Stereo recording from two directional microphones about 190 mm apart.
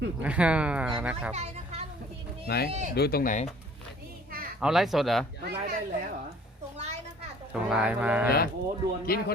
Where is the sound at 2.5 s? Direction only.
55° left (ahead or behind).